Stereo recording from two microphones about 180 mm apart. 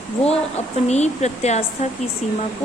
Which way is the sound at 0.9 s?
40° left (ahead or behind).